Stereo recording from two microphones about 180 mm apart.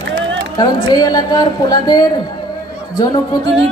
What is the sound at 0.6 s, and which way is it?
A man's voice, 25° left (ahead or behind).